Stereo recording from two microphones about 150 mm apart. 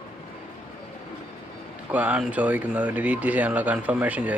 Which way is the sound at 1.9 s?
10° right (ahead or behind).